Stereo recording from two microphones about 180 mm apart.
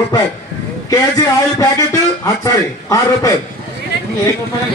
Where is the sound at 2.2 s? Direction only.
20° left (ahead or behind).